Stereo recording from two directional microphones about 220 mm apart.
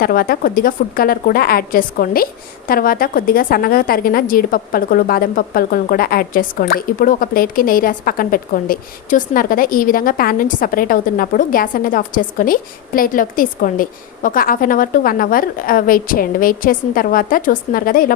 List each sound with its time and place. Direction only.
0.0 s a woman's voice: 40° left (ahead or behind)